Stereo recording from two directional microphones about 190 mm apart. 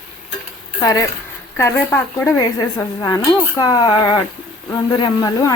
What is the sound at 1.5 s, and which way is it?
Speech, 15° left (ahead or behind).